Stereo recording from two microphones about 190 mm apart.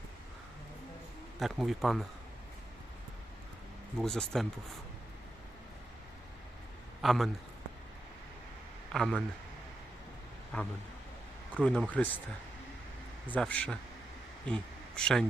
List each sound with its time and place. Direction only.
1.4 s speech: centre (ahead or behind)
3.9 s speech: 5° left (ahead or behind)
7.0 s a man's voice: centre (ahead or behind)
8.9 s speech: centre (ahead or behind)
10.5 s speech: 5° left (ahead or behind)
13.2 s speech: 5° left (ahead or behind)